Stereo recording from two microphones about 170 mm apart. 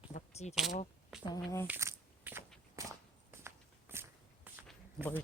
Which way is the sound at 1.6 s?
15° right (ahead or behind).